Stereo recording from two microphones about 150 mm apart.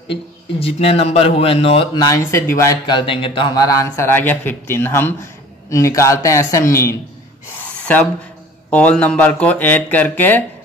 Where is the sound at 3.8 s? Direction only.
20° left (ahead or behind).